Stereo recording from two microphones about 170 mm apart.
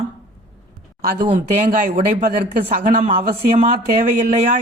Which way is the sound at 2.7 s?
50° right (ahead or behind).